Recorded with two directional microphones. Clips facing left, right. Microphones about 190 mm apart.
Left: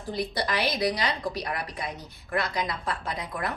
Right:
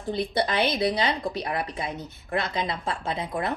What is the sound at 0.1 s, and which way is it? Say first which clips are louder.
Speech: right 3 dB; 25° right (ahead or behind).